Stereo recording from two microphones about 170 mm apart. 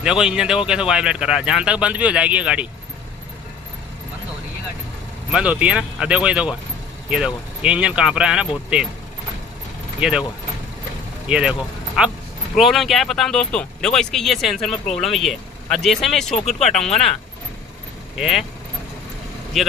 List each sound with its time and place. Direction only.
0.0 s speech: 5° right (ahead or behind)
5.3 s speech: 10° right (ahead or behind)
9.9 s speech: 5° right (ahead or behind)
11.2 s speech: 5° right (ahead or behind)
16.4 s speech: 40° left (ahead or behind)